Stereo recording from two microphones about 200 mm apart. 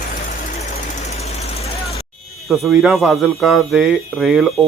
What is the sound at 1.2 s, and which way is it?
Vehicle, 30° left (ahead or behind).